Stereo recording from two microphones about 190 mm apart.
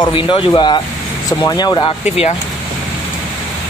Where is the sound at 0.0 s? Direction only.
25° left (ahead or behind).